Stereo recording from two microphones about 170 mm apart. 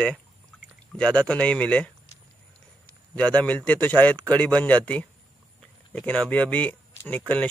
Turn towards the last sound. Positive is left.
turn(degrees=10)  # may be behind; listen again after turning